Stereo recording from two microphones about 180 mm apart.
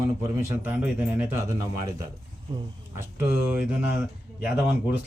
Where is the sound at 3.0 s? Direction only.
10° right (ahead or behind).